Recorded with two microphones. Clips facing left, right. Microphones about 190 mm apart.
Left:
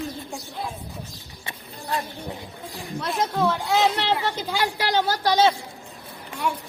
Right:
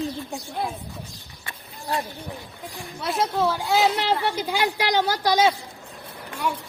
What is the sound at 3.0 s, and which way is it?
A woman's voice, centre (ahead or behind).